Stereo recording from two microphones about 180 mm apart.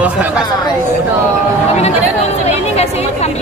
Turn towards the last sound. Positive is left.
turn(degrees=35)  # may be behind; listen again after turning